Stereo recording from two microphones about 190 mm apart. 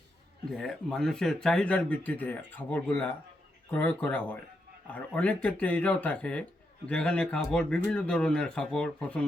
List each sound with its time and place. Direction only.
0.5 s speech: centre (ahead or behind)